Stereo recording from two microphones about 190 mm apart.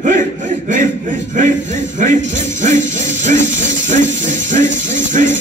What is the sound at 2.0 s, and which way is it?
Music, 40° right (ahead or behind).